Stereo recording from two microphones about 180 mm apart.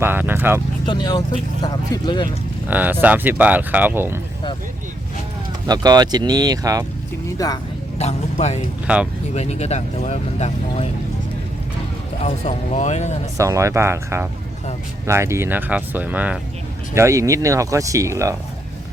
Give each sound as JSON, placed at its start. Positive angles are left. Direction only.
{"t": 0.0, "sound": "speech", "side_deg": -10}
{"t": 0.9, "sound": "speech", "side_deg": 25}
{"t": 2.6, "sound": "speech", "side_deg": -10}
{"t": 5.6, "sound": "speech", "side_deg": -20}
{"t": 7.3, "sound": "speech", "side_deg": 20}
{"t": 7.9, "sound": "a man's voice", "side_deg": 40}
{"t": 12.2, "sound": "speech", "side_deg": 40}
{"t": 13.3, "sound": "speech", "side_deg": -15}